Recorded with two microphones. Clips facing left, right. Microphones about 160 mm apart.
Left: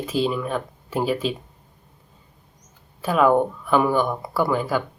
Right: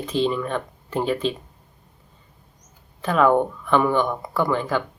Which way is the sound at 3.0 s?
5° left (ahead or behind).